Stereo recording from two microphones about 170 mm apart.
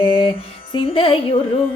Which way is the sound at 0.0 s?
30° left (ahead or behind).